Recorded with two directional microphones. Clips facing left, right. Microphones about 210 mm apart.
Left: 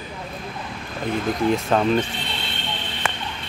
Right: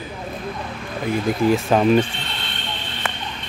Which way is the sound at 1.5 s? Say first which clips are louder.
Right 4 dB; 10° right (ahead or behind).